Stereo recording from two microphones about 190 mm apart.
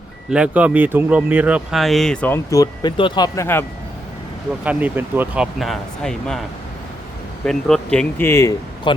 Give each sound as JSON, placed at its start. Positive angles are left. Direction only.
{"t": 0.3, "sound": "speech", "side_deg": -5}
{"t": 4.6, "sound": "speech", "side_deg": -10}
{"t": 7.4, "sound": "speech", "side_deg": 5}